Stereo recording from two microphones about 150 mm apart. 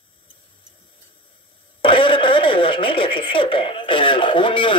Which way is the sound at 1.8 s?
35° left (ahead or behind).